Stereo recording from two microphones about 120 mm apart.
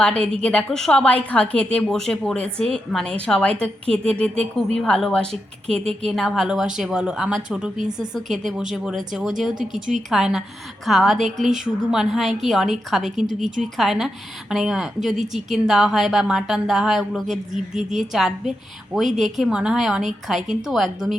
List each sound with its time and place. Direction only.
0.0 s a woman's voice: 10° left (ahead or behind); by 7.7 s 5° right (ahead or behind)
7.9 s speech: 35° right (ahead or behind)
8.3 s a woman's voice: 5° right (ahead or behind)